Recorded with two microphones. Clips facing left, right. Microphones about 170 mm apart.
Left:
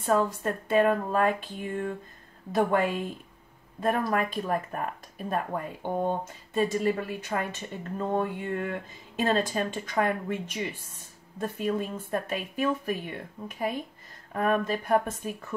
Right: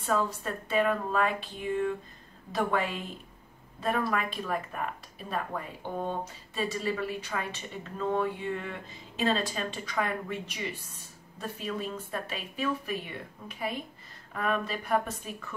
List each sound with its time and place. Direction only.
0.0 s speech: 50° left (ahead or behind)
2.5 s speech: 50° left (ahead or behind)